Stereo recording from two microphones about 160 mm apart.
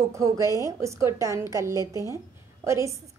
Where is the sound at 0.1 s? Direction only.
20° right (ahead or behind).